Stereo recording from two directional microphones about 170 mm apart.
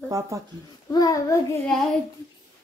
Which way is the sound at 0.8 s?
20° left (ahead or behind).